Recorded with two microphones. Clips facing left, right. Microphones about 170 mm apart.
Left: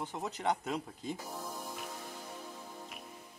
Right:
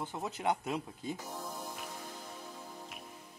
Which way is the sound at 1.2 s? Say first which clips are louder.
Even; centre (ahead or behind).